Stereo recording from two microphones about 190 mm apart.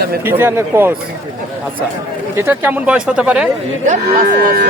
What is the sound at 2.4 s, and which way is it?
Speech, 10° right (ahead or behind).